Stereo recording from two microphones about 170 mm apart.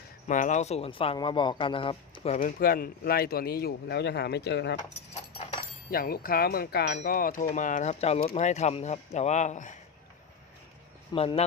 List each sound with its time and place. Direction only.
0.3 s speech: 50° left (ahead or behind); by 2.4 s 35° left (ahead or behind)
2.4 s a man's voice: 60° left (ahead or behind); by 4.8 s 80° left
5.9 s wind chime: 60° left (ahead or behind)
7.0 s a man's voice: 55° left (ahead or behind)
11.1 s speech: 35° left (ahead or behind)